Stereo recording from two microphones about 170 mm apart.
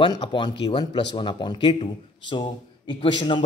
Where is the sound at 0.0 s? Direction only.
30° left (ahead or behind).